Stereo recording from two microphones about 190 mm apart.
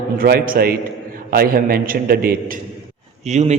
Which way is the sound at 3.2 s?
35° right (ahead or behind).